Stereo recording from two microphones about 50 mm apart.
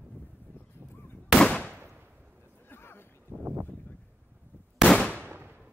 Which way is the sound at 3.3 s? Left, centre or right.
Right.